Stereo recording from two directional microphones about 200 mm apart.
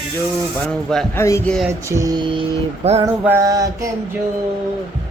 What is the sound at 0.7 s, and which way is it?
Speech, 5° left (ahead or behind).